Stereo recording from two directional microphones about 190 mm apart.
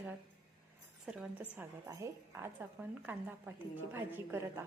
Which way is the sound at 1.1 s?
5° right (ahead or behind).